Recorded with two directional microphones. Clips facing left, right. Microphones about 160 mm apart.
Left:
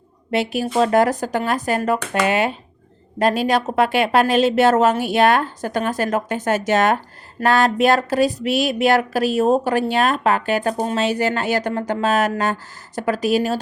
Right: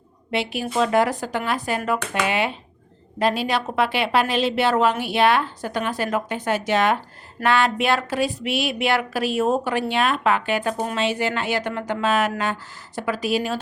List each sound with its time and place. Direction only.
0.3 s a woman's voice: 40° left (ahead or behind)